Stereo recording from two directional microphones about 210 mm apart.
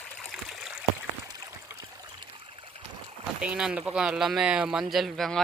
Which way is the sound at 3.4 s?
5° right (ahead or behind).